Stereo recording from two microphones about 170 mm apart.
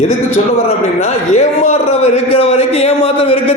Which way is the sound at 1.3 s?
40° left (ahead or behind).